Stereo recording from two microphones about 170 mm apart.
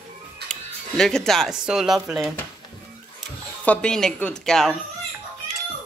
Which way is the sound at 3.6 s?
5° left (ahead or behind).